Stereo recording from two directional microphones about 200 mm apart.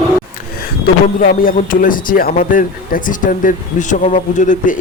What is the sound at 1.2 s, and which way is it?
Speech, 45° left (ahead or behind).